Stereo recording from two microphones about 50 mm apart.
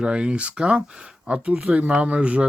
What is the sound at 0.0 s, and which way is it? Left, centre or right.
Speech, right.